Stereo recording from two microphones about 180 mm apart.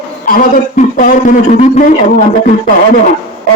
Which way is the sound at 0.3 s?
50° left (ahead or behind).